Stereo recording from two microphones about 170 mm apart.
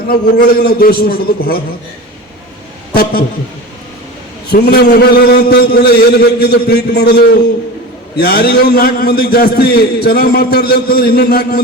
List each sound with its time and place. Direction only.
0.1 s a man's voice: 60° left (ahead or behind)
2.9 s a man's voice: 65° left (ahead or behind)
4.5 s a man's voice: 70° left (ahead or behind)